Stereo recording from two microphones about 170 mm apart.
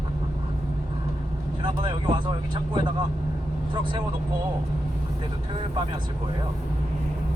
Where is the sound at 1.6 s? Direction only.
25° right (ahead or behind).